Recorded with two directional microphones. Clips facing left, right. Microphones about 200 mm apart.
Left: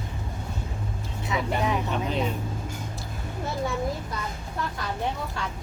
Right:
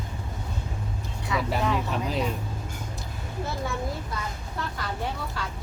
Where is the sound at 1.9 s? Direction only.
Centre (ahead or behind).